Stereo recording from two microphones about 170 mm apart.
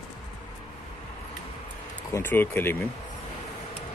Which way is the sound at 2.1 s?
15° left (ahead or behind).